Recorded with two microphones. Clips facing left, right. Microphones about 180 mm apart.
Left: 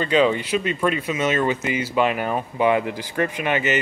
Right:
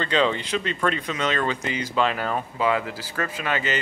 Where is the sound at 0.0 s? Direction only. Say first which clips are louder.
Left 4 dB; 10° left (ahead or behind).